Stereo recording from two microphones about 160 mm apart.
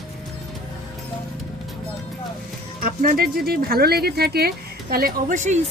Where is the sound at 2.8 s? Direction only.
65° right (ahead or behind); by 5.5 s 50° right (ahead or behind).